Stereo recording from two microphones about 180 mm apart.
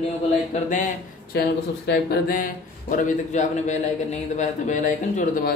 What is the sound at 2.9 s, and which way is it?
Speech, 40° left (ahead or behind).